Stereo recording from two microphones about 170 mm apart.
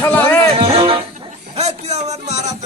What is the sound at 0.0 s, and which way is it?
Music, 10° left (ahead or behind).